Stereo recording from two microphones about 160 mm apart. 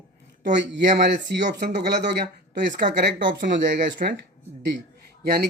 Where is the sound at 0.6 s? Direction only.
90° right.